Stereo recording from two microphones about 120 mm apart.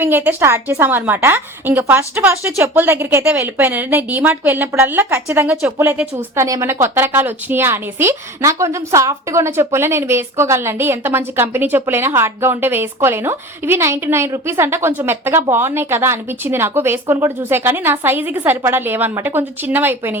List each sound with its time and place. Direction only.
0.0 s a woman's voice: 15° right (ahead or behind)